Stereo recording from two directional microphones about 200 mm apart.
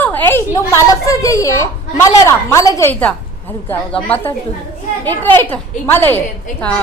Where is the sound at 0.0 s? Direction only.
10° left (ahead or behind).